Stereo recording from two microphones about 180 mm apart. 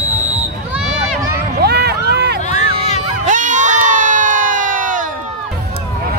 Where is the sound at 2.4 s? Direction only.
40° left (ahead or behind).